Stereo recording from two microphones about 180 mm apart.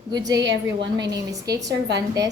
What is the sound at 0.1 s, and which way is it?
Speech, 20° right (ahead or behind).